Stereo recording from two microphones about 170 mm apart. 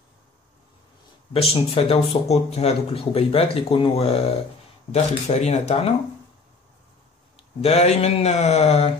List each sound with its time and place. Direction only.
1.3 s speech: 35° left (ahead or behind)
7.6 s speech: 40° left (ahead or behind)